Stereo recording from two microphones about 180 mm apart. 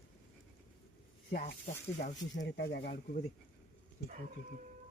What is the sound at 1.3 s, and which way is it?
Speech, 50° left (ahead or behind).